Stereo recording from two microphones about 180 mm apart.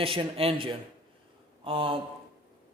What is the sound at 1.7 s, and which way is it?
Speech, 30° right (ahead or behind).